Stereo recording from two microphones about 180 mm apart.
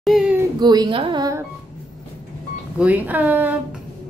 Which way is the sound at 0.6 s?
25° right (ahead or behind).